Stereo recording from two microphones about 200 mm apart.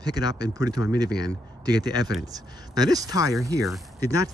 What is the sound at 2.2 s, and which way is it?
Speech, 20° right (ahead or behind).